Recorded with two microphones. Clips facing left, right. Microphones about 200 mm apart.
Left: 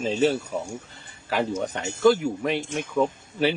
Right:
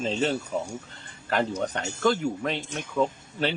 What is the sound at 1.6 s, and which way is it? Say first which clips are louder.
Speech: left 3 dB; 5° left (ahead or behind).